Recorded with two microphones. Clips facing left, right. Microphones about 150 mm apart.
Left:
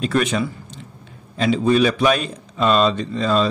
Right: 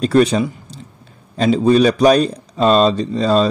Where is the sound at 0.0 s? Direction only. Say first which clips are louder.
Right 6 dB; 35° right (ahead or behind).